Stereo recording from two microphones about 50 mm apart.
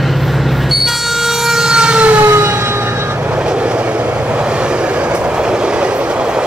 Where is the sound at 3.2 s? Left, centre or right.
Centre.